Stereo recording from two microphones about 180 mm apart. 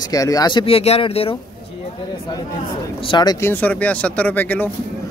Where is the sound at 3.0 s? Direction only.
25° left (ahead or behind); by 4.7 s 10° left (ahead or behind).